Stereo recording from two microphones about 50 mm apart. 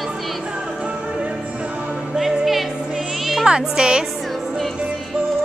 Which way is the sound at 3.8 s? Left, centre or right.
Centre.